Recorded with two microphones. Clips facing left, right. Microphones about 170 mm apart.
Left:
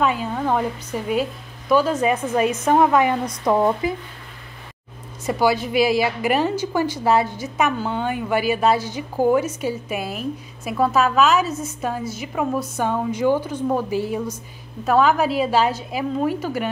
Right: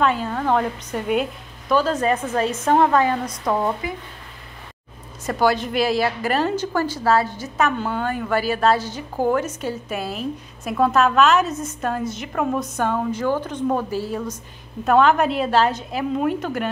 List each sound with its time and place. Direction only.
0.0 s a woman's voice: 10° left (ahead or behind)
3.8 s speech: 25° left (ahead or behind)
5.2 s a woman's voice: 10° left (ahead or behind)
14.9 s a woman's voice: 5° left (ahead or behind)